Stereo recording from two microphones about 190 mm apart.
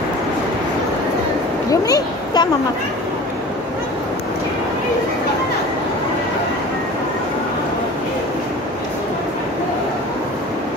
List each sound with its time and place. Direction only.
1.7 s speech: 20° left (ahead or behind)